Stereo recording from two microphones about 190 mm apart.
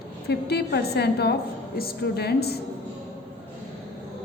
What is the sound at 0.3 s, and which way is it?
A woman's voice, 60° left (ahead or behind).